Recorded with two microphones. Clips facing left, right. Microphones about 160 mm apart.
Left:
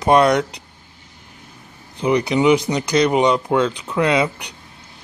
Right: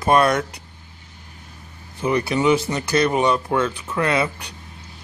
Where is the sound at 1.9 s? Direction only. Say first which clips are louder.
Left 3 dB; 20° left (ahead or behind).